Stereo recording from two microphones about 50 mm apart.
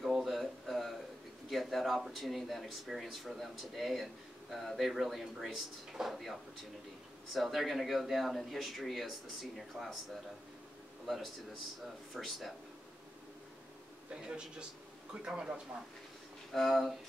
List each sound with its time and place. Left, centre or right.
0.0 s a sound: centre
1.5 s speech: centre
12.1 s speech: centre
14.1 s a man's voice: centre
16.5 s speech: centre